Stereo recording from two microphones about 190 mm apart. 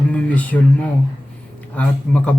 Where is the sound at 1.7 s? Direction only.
5° left (ahead or behind).